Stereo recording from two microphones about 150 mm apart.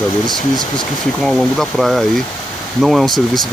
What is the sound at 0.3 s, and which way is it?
Speech, 30° left (ahead or behind).